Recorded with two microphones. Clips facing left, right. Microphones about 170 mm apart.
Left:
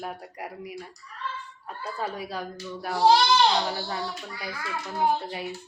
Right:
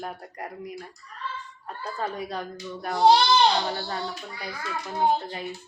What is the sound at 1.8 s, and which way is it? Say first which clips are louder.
Speech: right 1 dB; 10° left (ahead or behind).